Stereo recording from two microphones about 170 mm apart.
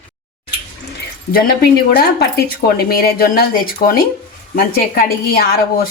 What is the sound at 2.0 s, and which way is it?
Speech, 65° left (ahead or behind).